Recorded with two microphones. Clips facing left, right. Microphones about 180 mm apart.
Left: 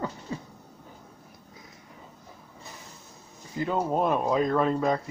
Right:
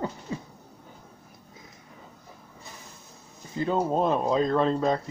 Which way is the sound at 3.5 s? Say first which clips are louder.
Right 2 dB; 25° right (ahead or behind).